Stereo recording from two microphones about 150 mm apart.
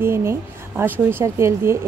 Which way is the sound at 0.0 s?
15° right (ahead or behind).